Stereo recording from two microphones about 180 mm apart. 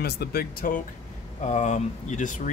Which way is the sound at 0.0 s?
60° left (ahead or behind).